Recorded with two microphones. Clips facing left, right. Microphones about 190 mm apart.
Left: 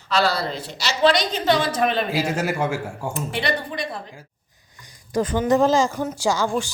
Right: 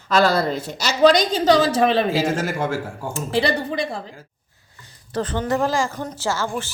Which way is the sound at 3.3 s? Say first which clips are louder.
Right 7 dB; 30° right (ahead or behind).